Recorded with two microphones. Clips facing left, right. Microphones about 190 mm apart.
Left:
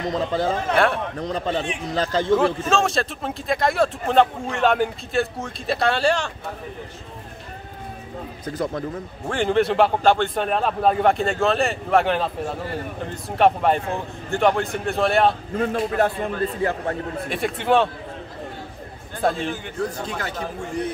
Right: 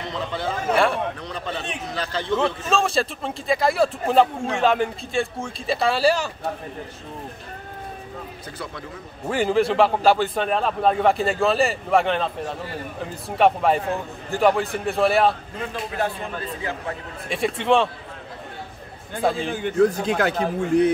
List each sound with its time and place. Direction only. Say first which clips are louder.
0.0 s a man's voice: left 5 dB; 40° left (ahead or behind)
0.7 s a man's voice: right 2 dB; centre (ahead or behind)
1.1 s a man's voice: left 6 dB; 40° left (ahead or behind)
2.3 s a man's voice: left 1 dB; centre (ahead or behind)
9.3 s a man's voice: even; 5° right (ahead or behind)
15.5 s speech: left 7 dB; 50° left (ahead or behind)
17.3 s a man's voice: right 1 dB; centre (ahead or behind)
19.2 s a man's voice: even; centre (ahead or behind)
19.6 s a man's voice: right 8 dB; 60° right (ahead or behind)